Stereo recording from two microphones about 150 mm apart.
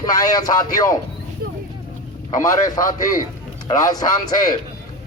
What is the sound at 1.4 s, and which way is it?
Vehicle, 90° right.